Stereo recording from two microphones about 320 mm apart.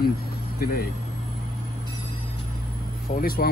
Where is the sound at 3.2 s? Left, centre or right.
Left.